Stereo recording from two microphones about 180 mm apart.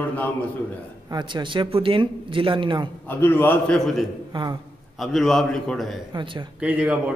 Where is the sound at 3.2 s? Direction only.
10° left (ahead or behind).